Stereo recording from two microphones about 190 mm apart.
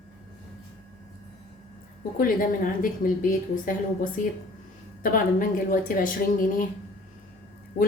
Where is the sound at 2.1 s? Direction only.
45° left (ahead or behind).